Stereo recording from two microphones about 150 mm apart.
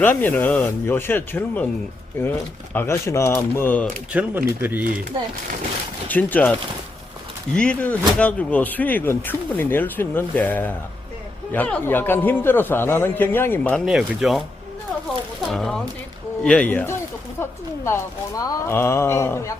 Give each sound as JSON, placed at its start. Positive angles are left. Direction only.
{"t": 0.0, "sound": "speech", "side_deg": 10}
{"t": 2.7, "sound": "speech", "side_deg": 15}
{"t": 4.1, "sound": "speech", "side_deg": -10}
{"t": 6.1, "sound": "speech", "side_deg": 10}
{"t": 13.7, "sound": "speech", "side_deg": 0}
{"t": 15.4, "sound": "speech", "side_deg": 0}